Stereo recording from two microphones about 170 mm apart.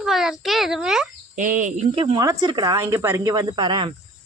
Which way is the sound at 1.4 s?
50° right (ahead or behind).